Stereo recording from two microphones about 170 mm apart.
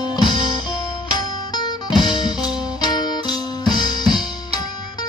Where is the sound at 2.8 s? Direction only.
25° left (ahead or behind).